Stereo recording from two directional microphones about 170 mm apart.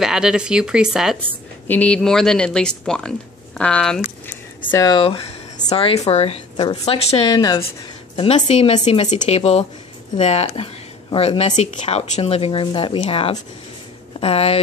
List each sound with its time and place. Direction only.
0.0 s speech: 5° right (ahead or behind)
1.7 s speech: 10° left (ahead or behind)
4.6 s speech: 20° left (ahead or behind)
7.2 s speech: 25° left (ahead or behind)
8.2 s speech: 35° left (ahead or behind)